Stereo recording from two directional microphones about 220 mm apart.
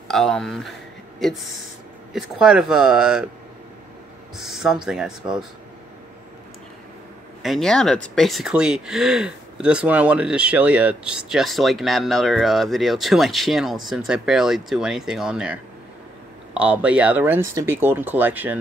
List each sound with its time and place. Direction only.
0.1 s speech: centre (ahead or behind)
2.1 s speech: 5° right (ahead or behind)
4.4 s speech: centre (ahead or behind)
7.4 s speech: centre (ahead or behind)